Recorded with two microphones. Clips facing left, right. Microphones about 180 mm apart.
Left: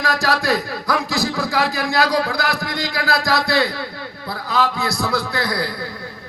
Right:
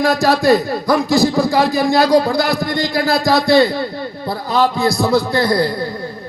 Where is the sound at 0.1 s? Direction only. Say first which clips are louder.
Right 6 dB; 90° left.